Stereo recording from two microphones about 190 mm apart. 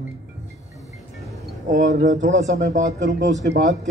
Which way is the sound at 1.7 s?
40° right (ahead or behind).